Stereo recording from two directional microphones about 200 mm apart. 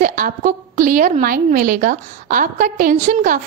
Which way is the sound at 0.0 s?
40° right (ahead or behind).